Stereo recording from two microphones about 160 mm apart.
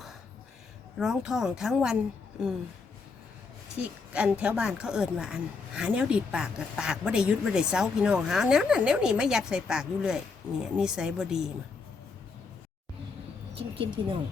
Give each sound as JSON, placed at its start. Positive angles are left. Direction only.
{"t": 0.9, "sound": "speech", "side_deg": -5}
{"t": 3.8, "sound": "speech", "side_deg": -10}
{"t": 13.6, "sound": "speech", "side_deg": -35}